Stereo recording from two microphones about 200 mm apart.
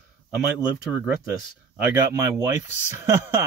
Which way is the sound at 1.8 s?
10° right (ahead or behind).